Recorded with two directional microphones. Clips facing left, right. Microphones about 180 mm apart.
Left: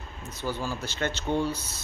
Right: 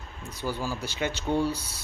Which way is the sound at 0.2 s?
10° right (ahead or behind).